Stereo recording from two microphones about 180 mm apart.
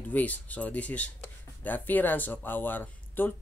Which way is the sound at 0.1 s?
10° left (ahead or behind).